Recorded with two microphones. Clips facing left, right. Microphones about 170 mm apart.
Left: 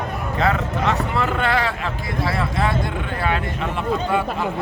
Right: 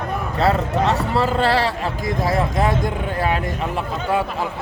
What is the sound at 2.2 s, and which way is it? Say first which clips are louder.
Speech: right 3 dB; 45° right (ahead or behind).